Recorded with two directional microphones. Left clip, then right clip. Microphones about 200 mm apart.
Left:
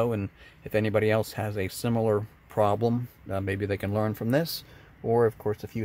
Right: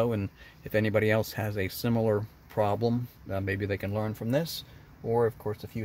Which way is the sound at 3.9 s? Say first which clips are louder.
Left 5 dB; 25° left (ahead or behind).